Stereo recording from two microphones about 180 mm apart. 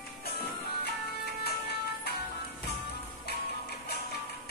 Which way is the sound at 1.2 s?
65° left (ahead or behind).